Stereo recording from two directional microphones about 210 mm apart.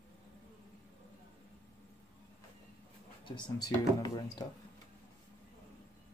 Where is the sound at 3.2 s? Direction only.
20° left (ahead or behind).